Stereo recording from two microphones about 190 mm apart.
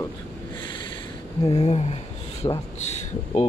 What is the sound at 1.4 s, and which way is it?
Speech, 35° left (ahead or behind).